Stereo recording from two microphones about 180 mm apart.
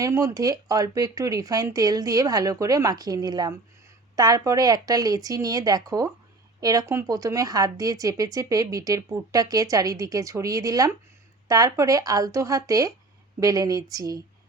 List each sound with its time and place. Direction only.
0.0 s speech: 20° right (ahead or behind)